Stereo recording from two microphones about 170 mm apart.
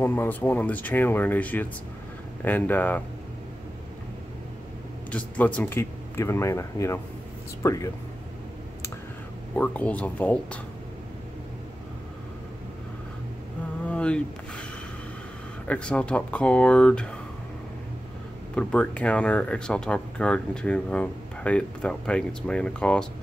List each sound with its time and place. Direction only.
0.0 s speech: 10° left (ahead or behind)
5.1 s speech: 10° left (ahead or behind)
9.6 s speech: 10° left (ahead or behind)
13.8 s a sound: 5° left (ahead or behind)
15.6 s speech: 10° left (ahead or behind)
18.5 s speech: 5° left (ahead or behind)